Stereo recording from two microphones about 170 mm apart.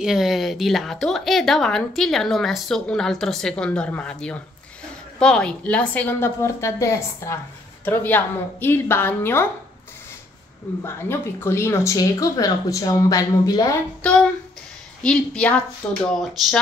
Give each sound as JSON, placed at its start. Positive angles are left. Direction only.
{"t": 0.0, "sound": "a woman's voice", "side_deg": 0}
{"t": 10.8, "sound": "a woman's voice", "side_deg": 15}
{"t": 15.0, "sound": "a woman's voice", "side_deg": 5}